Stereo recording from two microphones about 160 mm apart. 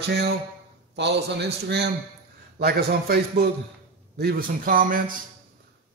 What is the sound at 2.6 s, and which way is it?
A man's voice, 75° right (ahead or behind).